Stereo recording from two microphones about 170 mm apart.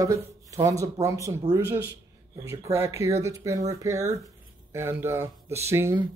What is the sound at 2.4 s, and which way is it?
Speech, 15° right (ahead or behind).